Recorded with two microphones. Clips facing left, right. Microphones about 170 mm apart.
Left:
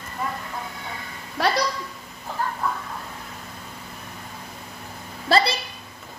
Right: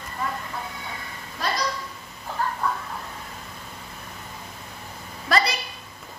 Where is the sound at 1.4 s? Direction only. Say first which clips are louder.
Left 6 dB; 70° left (ahead or behind).